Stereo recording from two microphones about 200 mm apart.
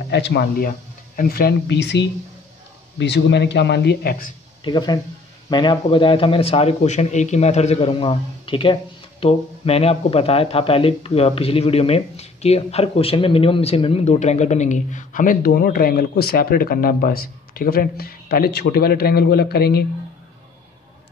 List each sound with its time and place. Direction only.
0.1 s speech: 60° left (ahead or behind)
4.6 s a man's voice: 20° left (ahead or behind); by 19.8 s 50° left (ahead or behind)